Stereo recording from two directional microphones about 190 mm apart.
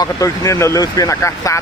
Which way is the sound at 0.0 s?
15° left (ahead or behind).